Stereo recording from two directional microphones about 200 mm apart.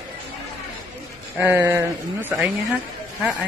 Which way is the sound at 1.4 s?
10° right (ahead or behind).